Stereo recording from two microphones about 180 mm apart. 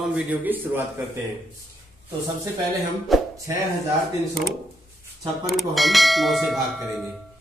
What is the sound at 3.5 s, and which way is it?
Speech, 15° right (ahead or behind).